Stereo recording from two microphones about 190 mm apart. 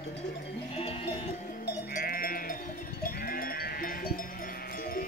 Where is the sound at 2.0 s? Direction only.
50° left (ahead or behind).